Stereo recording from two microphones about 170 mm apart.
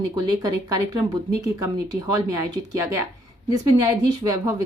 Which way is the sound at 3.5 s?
20° right (ahead or behind).